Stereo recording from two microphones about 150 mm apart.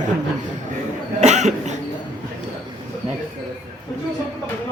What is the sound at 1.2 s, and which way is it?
Cough, 50° right (ahead or behind).